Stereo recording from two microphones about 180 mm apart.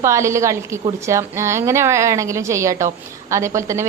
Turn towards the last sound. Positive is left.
turn(degrees=-15)  # may be behind; listen again after turning